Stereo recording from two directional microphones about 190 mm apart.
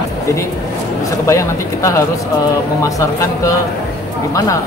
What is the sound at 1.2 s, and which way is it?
Speech, 15° left (ahead or behind).